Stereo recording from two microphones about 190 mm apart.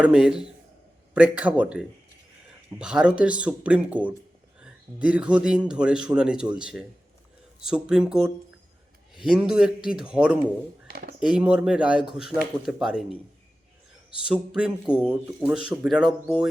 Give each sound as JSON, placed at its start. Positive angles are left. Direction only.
{"t": 0.0, "sound": "speech", "side_deg": -5}
{"t": 10.8, "sound": "a sound", "side_deg": -55}
{"t": 11.2, "sound": "speech", "side_deg": -5}
{"t": 14.5, "sound": "speech", "side_deg": -5}